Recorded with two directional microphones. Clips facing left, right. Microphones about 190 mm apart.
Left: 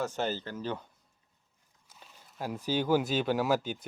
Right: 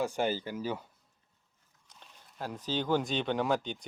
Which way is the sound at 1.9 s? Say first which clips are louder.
Left 1 dB; 5° left (ahead or behind).